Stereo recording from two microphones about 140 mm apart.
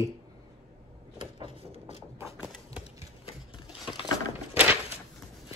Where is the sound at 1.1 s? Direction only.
35° right (ahead or behind).